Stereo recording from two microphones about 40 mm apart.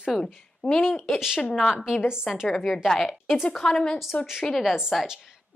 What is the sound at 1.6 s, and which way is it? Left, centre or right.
Speech, centre.